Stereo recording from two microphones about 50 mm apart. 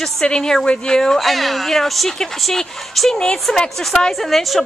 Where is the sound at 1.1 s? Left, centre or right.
Centre.